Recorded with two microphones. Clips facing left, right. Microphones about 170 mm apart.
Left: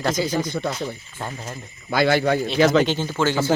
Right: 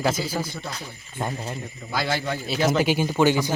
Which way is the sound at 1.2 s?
15° right (ahead or behind).